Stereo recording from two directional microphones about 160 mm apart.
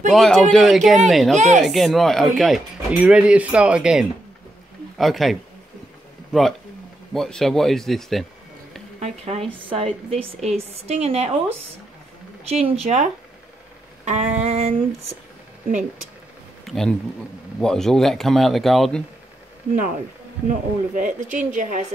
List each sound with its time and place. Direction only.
0.1 s speech: centre (ahead or behind)
1.3 s a sound: 50° right (ahead or behind)
1.6 s speech: centre (ahead or behind)
7.2 s speech: 5° left (ahead or behind)
9.0 s a woman's voice: 40° right (ahead or behind)
14.0 s a sound: 45° right (ahead or behind)
16.6 s speech: centre (ahead or behind)
20.4 s speech: 55° right (ahead or behind)
21.5 s a sound: 55° right (ahead or behind)